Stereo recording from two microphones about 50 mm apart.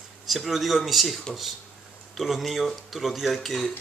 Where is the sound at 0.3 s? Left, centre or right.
Centre.